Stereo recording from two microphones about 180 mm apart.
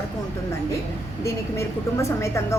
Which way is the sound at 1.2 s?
15° left (ahead or behind).